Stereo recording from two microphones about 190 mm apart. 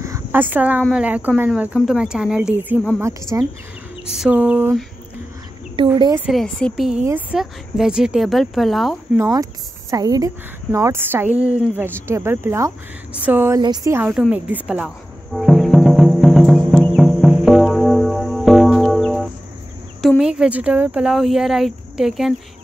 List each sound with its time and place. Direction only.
0.0 s a sound: 15° right (ahead or behind)
0.9 s speech: 10° right (ahead or behind)
4.0 s speech: 5° right (ahead or behind)
5.8 s speech: 25° right (ahead or behind)
6.1 s speech: 5° right (ahead or behind)
9.1 s speech: 15° right (ahead or behind)
15.3 s cricket: centre (ahead or behind)
20.0 s speech: centre (ahead or behind)